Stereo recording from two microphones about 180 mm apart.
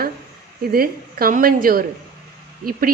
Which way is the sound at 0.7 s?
55° right (ahead or behind).